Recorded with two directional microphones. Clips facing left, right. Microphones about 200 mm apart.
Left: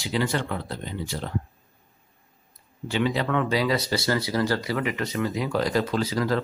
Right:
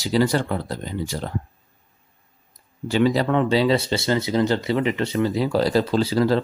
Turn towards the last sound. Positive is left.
turn(degrees=-30)  # may be behind; listen again after turning